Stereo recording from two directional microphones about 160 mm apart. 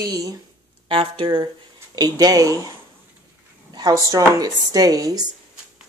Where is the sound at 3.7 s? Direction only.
25° right (ahead or behind).